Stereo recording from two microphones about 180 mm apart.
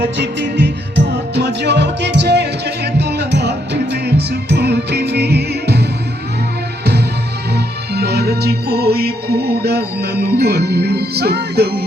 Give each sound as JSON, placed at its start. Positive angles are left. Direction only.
{"t": 0.2, "sound": "music", "side_deg": -75}
{"t": 7.5, "sound": "music", "side_deg": -65}